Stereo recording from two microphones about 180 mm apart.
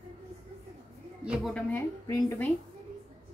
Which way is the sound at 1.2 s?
5° right (ahead or behind).